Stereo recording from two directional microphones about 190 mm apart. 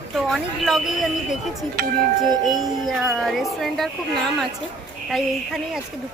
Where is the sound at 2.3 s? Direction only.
20° right (ahead or behind).